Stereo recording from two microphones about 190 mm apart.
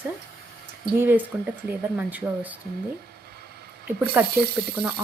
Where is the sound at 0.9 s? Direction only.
10° right (ahead or behind).